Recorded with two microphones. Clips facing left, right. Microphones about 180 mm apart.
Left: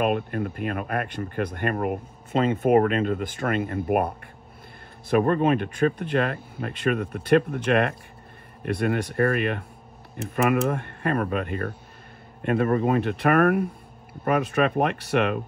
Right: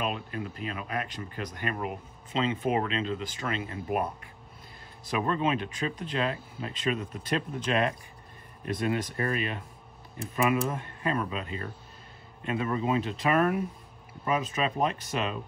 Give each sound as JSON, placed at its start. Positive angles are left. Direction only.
{"t": 0.0, "sound": "speech", "side_deg": 55}